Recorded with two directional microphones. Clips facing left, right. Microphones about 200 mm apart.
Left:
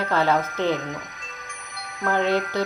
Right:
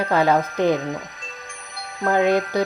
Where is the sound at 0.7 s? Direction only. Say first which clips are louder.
Right 4 dB; 30° right (ahead or behind).